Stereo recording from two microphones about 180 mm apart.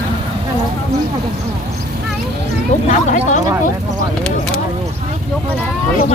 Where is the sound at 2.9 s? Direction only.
45° left (ahead or behind).